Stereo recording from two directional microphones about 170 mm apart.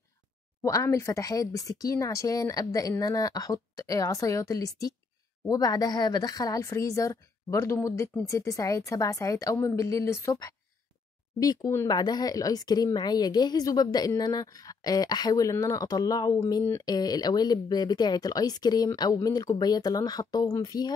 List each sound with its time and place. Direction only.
0.6 s speech: 20° left (ahead or behind)